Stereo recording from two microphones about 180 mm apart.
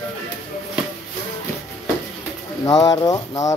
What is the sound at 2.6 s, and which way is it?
Speech, 20° left (ahead or behind).